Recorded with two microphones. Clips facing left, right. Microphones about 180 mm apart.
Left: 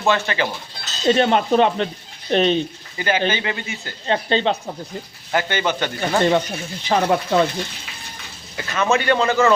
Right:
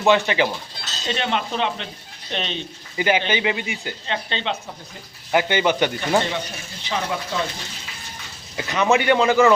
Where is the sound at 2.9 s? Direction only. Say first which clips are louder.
Even; 15° right (ahead or behind).